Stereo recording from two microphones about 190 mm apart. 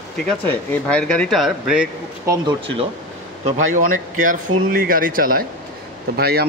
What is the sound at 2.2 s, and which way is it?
Speech, 20° right (ahead or behind).